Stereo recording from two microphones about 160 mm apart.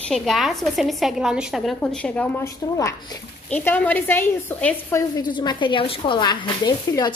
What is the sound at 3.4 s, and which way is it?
A woman's voice, 10° left (ahead or behind).